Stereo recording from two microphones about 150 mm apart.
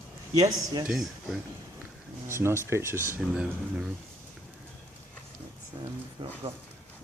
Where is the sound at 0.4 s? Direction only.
25° right (ahead or behind).